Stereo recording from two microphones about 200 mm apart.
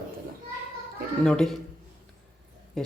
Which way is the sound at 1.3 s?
Centre (ahead or behind).